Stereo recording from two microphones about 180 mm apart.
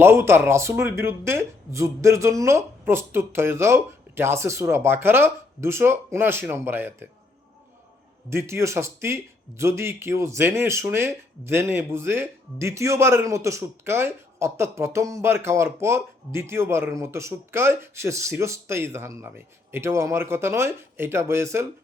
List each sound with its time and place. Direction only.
0.0 s speech: 15° right (ahead or behind)
8.3 s speech: 15° right (ahead or behind)